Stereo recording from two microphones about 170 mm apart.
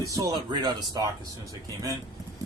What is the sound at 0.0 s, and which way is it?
Speech, 20° right (ahead or behind).